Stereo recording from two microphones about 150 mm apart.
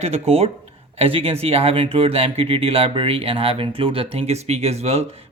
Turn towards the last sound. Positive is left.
turn(degrees=-45)  # may be behind; listen again after turning